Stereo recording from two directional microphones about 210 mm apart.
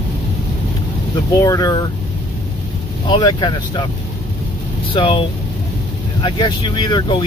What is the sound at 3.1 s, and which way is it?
Speech, 20° left (ahead or behind).